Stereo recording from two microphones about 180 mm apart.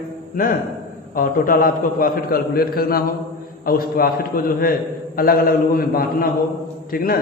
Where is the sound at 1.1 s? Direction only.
50° left (ahead or behind).